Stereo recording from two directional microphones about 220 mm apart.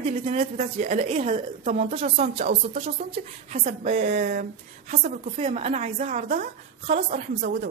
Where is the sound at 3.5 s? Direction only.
30° right (ahead or behind).